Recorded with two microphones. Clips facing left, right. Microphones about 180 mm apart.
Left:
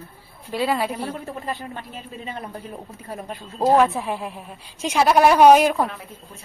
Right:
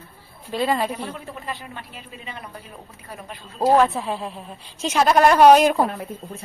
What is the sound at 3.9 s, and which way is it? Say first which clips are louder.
Speech: even; 15° left (ahead or behind).